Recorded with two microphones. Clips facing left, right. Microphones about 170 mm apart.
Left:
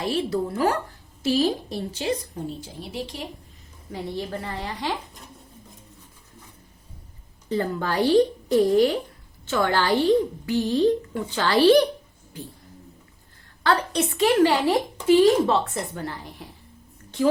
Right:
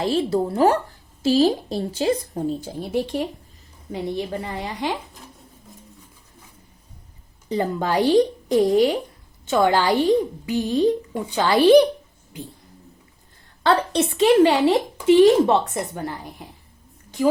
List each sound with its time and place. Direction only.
0.0 s a woman's voice: 30° right (ahead or behind)
2.3 s speech: 50° right (ahead or behind)
3.9 s a woman's voice: 20° right (ahead or behind)
7.4 s a woman's voice: 15° right (ahead or behind)
13.6 s a woman's voice: 25° right (ahead or behind)